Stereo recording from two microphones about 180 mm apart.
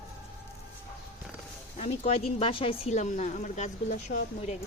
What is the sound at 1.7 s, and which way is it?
Speech, 35° left (ahead or behind).